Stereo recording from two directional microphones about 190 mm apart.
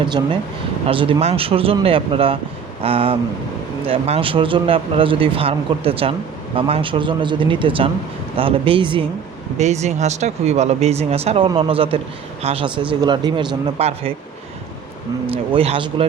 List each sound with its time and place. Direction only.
0.0 s speech: 25° right (ahead or behind)
15.5 s speech: 30° right (ahead or behind)